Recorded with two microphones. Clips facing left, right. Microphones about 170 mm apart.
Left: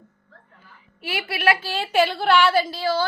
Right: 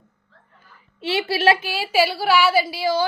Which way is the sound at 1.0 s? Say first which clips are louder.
Right 4 dB; 25° right (ahead or behind).